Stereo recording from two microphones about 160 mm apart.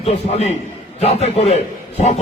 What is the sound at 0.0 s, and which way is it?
A man's voice, 45° left (ahead or behind).